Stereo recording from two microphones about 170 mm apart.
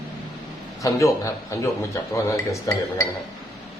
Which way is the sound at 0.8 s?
20° left (ahead or behind).